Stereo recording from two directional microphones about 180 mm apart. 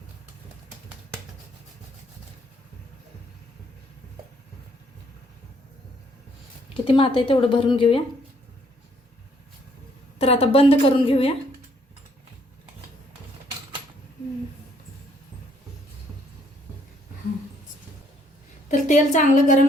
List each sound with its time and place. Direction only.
6.8 s speech: 30° left (ahead or behind)
10.2 s a woman's voice: 35° left (ahead or behind)
18.7 s a woman's voice: 45° left (ahead or behind)